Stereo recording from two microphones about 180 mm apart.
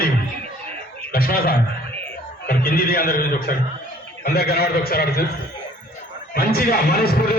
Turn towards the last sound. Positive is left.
turn(degrees=60)  # may be behind; listen again after turning